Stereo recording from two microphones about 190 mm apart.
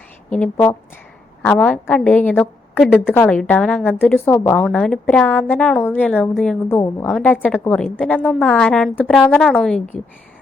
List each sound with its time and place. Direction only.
0.3 s a woman's voice: 5° left (ahead or behind)